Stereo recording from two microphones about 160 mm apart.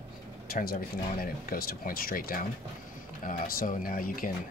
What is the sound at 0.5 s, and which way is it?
Speech, 65° left (ahead or behind).